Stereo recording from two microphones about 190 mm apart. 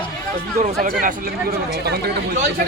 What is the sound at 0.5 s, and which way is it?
Speech, 45° right (ahead or behind).